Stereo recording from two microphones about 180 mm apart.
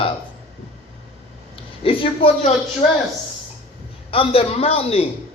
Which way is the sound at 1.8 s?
30° left (ahead or behind).